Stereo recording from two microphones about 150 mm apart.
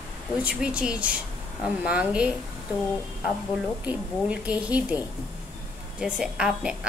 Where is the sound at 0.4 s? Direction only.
10° right (ahead or behind).